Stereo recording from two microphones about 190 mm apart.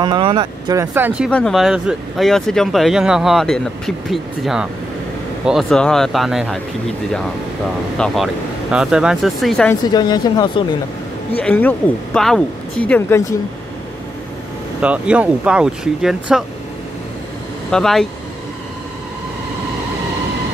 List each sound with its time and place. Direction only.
0.0 s speech: 25° right (ahead or behind)
0.9 s speech: 10° right (ahead or behind)
8.0 s speech: centre (ahead or behind)
9.9 s speech: 20° left (ahead or behind)
11.3 s speech: 10° left (ahead or behind)
14.8 s speech: 5° right (ahead or behind)
17.6 s speech: 5° left (ahead or behind)